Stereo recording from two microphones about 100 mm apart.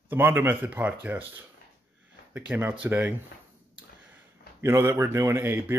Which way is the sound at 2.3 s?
15° right (ahead or behind).